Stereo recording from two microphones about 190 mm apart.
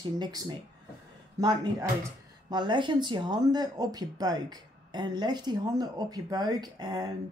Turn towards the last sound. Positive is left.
turn(degrees=-20)  # may be behind; listen again after turning